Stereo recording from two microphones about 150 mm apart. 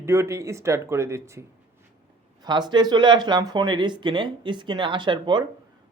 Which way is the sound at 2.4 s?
30° right (ahead or behind).